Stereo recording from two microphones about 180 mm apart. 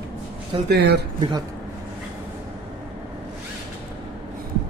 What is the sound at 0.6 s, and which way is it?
Speech, 65° right (ahead or behind).